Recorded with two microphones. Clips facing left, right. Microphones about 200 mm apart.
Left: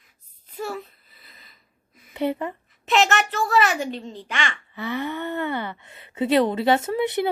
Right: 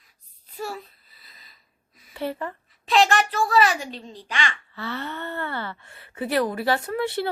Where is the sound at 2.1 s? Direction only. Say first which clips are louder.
Left 4 dB; 20° left (ahead or behind).